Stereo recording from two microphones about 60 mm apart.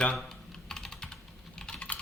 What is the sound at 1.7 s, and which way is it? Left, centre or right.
Typing, centre.